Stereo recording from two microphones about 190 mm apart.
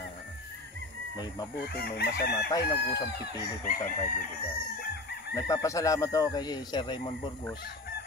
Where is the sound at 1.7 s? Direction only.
55° left (ahead or behind).